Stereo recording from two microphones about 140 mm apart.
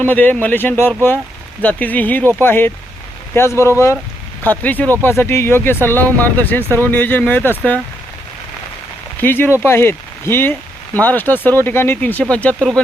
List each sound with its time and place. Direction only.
0.0 s speech: 10° left (ahead or behind)
9.2 s speech: 15° left (ahead or behind)